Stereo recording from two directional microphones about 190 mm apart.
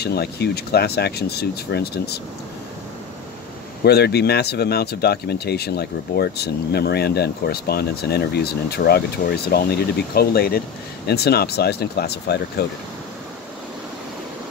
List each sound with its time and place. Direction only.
0.0 s speech: 60° left (ahead or behind)
3.8 s speech: 60° left (ahead or behind)